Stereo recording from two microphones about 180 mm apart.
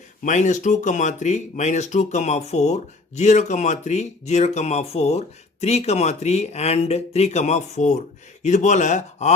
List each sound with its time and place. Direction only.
0.3 s speech: 40° left (ahead or behind)